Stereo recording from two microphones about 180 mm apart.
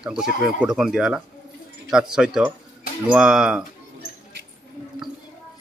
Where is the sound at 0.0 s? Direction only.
5° right (ahead or behind).